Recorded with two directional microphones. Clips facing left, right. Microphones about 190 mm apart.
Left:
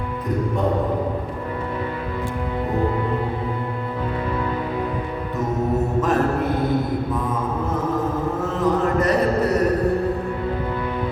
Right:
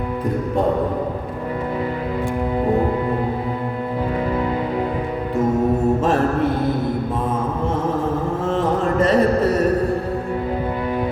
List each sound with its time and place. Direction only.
8.4 s mantra: 30° right (ahead or behind)